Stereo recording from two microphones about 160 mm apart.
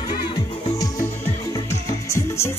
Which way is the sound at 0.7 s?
20° left (ahead or behind).